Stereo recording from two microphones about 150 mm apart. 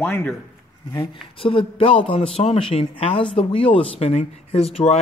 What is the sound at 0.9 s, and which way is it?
Speech, 25° left (ahead or behind).